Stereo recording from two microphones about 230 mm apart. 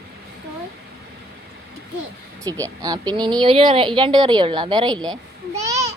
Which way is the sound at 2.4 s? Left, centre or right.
Centre.